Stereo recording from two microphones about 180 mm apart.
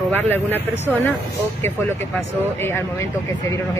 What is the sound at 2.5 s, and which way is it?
Speech, 15° left (ahead or behind).